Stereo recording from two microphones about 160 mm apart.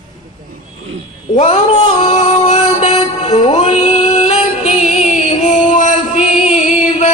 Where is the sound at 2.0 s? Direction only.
40° left (ahead or behind).